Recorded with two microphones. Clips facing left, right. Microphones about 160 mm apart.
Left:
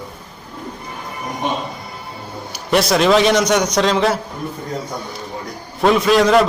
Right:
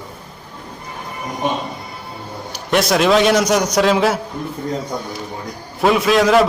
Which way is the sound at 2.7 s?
Centre (ahead or behind).